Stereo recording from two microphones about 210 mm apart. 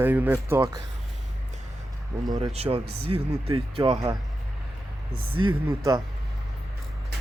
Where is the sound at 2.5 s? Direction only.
30° right (ahead or behind).